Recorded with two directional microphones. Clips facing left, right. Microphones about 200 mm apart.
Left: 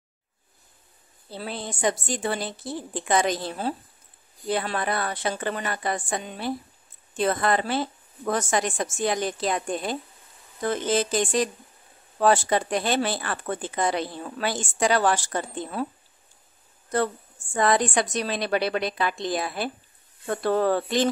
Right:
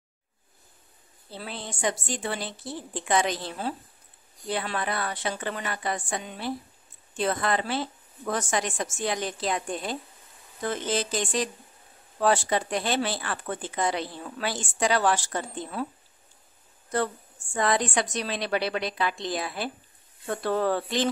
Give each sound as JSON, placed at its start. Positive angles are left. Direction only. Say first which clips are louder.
{"t": 1.4, "sound": "speech", "louder": "left 4 dB", "side_deg": 40}
{"t": 17.6, "sound": "speech", "louder": "left 3 dB", "side_deg": 50}